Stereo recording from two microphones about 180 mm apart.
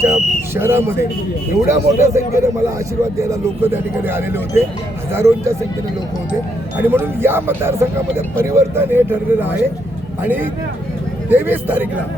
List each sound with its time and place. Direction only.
0.0 s speech: 15° right (ahead or behind)
6.7 s speech: 10° right (ahead or behind)